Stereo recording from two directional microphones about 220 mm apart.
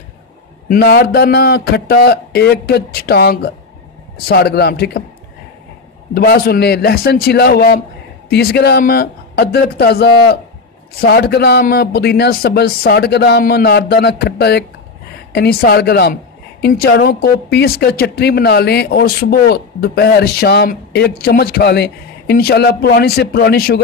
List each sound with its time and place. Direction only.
0.7 s speech: 45° left (ahead or behind)
6.1 s speech: 45° left (ahead or behind)